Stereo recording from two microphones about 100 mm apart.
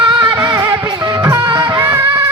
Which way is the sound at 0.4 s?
35° right (ahead or behind).